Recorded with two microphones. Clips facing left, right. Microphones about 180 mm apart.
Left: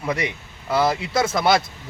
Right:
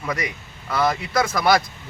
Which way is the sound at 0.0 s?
25° left (ahead or behind).